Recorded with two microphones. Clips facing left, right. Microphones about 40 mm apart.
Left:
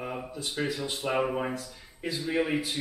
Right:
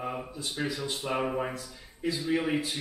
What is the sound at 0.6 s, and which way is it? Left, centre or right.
Speech, centre.